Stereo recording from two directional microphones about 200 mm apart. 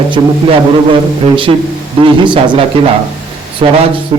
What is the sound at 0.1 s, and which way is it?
A man's voice, 25° right (ahead or behind).